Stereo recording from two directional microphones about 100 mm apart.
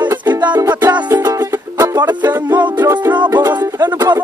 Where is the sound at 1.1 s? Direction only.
30° right (ahead or behind).